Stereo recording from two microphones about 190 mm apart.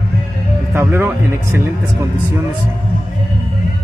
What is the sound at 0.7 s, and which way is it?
Speech, 10° right (ahead or behind).